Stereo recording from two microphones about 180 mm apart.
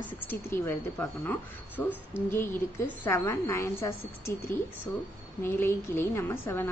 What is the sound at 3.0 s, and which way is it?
A woman's voice, 15° left (ahead or behind).